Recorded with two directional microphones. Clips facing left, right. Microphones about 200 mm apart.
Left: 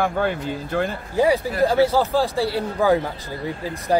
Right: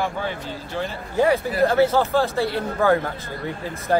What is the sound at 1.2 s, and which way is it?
Speech, 10° left (ahead or behind).